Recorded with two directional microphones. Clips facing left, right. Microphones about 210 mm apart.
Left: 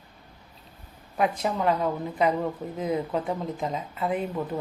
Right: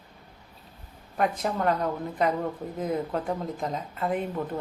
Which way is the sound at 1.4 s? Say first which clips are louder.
Left 1 dB; centre (ahead or behind).